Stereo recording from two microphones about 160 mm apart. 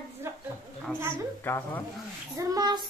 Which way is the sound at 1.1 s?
15° left (ahead or behind).